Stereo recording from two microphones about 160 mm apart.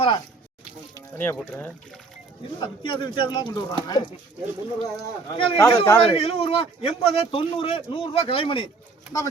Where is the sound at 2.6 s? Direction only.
30° left (ahead or behind).